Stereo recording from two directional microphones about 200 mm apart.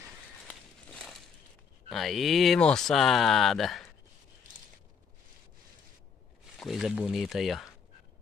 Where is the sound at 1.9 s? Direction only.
Centre (ahead or behind).